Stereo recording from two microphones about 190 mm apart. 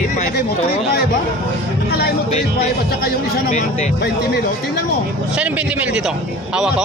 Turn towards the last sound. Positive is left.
turn(degrees=-5)  # may be behind; listen again after turning